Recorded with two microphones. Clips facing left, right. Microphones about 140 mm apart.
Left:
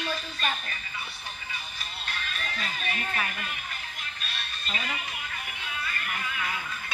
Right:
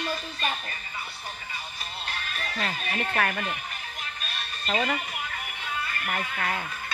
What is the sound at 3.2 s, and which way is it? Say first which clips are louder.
Speech: right 6 dB; 60° right (ahead or behind).